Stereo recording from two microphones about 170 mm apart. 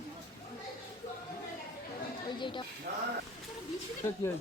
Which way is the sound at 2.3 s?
30° left (ahead or behind).